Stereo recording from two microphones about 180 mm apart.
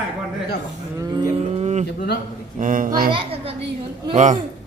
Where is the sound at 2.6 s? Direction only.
45° right (ahead or behind).